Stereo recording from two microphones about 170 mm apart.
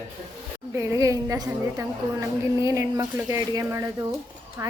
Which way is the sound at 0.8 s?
15° right (ahead or behind).